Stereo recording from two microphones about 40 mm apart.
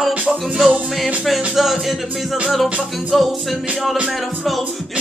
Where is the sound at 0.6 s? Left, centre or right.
Centre.